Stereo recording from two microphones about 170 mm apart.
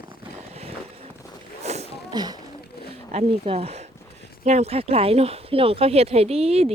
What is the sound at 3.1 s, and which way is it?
Speech, 35° right (ahead or behind).